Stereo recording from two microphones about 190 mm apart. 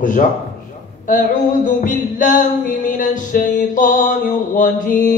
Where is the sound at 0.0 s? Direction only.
45° left (ahead or behind).